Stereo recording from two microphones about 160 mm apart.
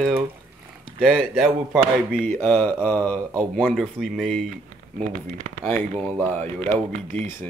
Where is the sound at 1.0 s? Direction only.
5° right (ahead or behind).